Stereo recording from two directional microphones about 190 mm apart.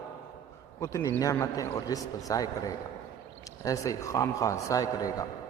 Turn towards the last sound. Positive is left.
turn(degrees=20)  # may be behind; listen again after turning